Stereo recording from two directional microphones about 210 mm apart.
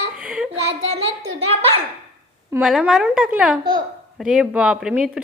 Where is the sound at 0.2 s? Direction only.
5° right (ahead or behind).